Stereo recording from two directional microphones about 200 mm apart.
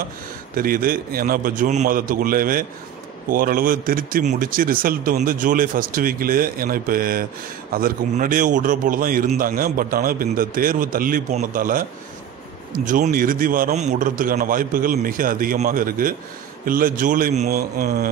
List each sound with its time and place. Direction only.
0.6 s a man's voice: 45° right (ahead or behind)
12.8 s a man's voice: 40° right (ahead or behind)
17.5 s a man's voice: 50° right (ahead or behind)